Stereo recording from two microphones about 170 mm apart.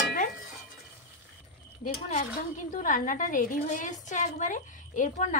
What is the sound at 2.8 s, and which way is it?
Speech, 50° left (ahead or behind).